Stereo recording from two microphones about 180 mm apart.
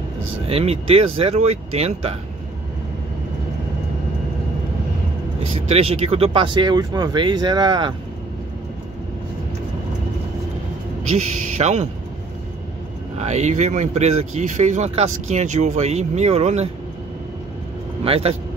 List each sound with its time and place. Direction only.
0.5 s speech: 35° right (ahead or behind)
5.7 s speech: 35° right (ahead or behind)
11.1 s speech: 40° right (ahead or behind)
13.2 s speech: 40° right (ahead or behind)
18.0 s speech: 35° right (ahead or behind)